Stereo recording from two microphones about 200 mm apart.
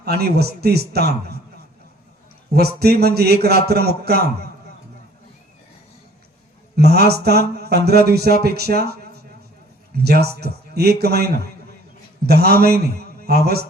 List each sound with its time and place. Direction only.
0.0 s speech: 50° right (ahead or behind)
2.5 s speech: 50° right (ahead or behind)
6.7 s speech: 55° right (ahead or behind)
10.0 s a man's voice: 55° right (ahead or behind)